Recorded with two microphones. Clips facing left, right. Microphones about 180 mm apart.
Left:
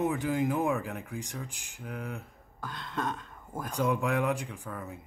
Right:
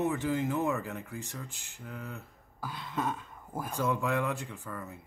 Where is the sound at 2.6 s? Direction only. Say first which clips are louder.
Even; 5° right (ahead or behind).